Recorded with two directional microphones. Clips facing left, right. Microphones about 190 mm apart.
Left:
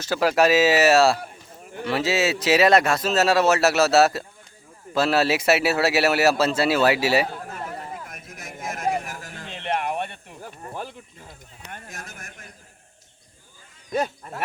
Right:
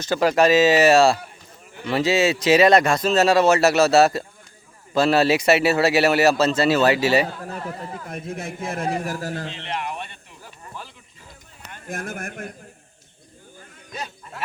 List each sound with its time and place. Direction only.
0.0 s speech: 5° left (ahead or behind)
8.3 s a man's voice: 30° right (ahead or behind)
9.5 s a sound: 55° left (ahead or behind)
11.9 s speech: 50° right (ahead or behind)
13.9 s speech: 50° left (ahead or behind)